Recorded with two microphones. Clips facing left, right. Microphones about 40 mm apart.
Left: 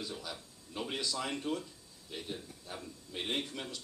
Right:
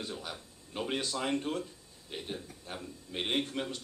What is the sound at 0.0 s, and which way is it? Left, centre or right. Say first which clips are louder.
Speech: right 2 dB; right.